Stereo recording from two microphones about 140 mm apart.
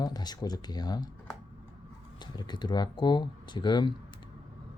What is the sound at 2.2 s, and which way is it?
Speech, 30° left (ahead or behind).